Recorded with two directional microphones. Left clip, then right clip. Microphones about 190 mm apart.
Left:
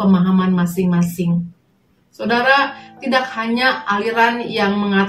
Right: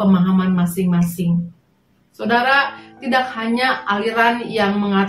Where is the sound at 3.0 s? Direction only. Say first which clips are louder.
Left 1 dB; 5° left (ahead or behind).